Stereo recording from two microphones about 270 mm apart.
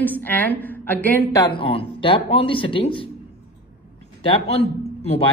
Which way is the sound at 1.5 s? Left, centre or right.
Centre.